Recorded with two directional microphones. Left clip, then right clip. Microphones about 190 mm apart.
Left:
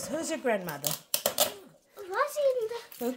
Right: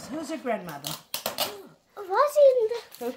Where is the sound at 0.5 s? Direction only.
40° left (ahead or behind).